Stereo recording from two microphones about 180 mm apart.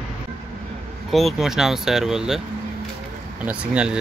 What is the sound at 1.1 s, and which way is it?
Speech, centre (ahead or behind).